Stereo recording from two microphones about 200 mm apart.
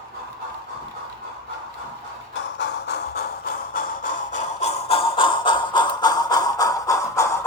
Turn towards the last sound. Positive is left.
turn(degrees=15)  # may be behind; listen again after turning